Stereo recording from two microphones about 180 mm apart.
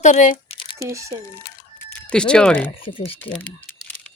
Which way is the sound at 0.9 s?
15° right (ahead or behind).